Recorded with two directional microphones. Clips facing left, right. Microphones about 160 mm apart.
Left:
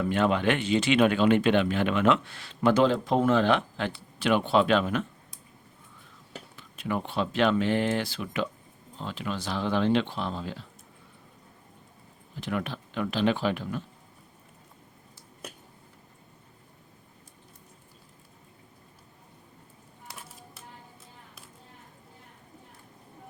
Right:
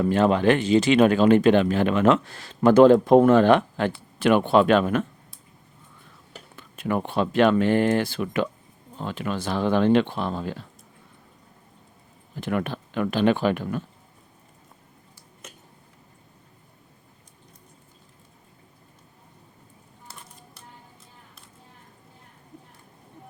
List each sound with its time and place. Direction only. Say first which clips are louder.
0.0 s speech: right 5 dB; 40° right (ahead or behind)
6.6 s speech: right 5 dB; 50° right (ahead or behind)
12.4 s speech: right 5 dB; 55° right (ahead or behind)
20.1 s music: left 1 dB; 5° left (ahead or behind)